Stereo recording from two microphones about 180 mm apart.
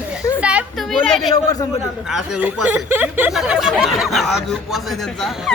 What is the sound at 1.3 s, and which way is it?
Speech, 20° left (ahead or behind).